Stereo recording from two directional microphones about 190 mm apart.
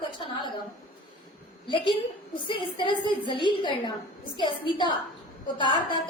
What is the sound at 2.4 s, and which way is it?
A woman's voice, 25° left (ahead or behind).